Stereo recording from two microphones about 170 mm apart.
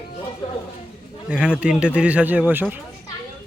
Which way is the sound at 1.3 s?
5° right (ahead or behind).